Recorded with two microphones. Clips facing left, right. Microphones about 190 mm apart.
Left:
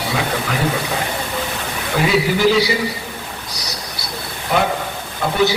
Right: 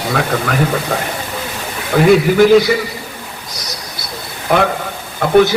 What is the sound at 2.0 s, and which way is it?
Speech, 50° right (ahead or behind).